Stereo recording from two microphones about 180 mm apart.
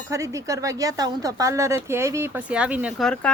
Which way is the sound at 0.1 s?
15° right (ahead or behind).